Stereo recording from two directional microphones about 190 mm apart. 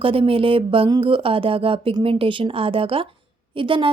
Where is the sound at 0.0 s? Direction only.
30° right (ahead or behind).